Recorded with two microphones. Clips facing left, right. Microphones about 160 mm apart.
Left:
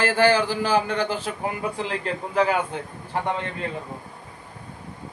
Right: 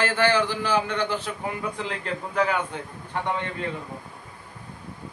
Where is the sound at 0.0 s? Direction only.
40° left (ahead or behind).